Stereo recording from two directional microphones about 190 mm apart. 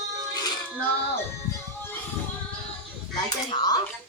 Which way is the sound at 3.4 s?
20° left (ahead or behind).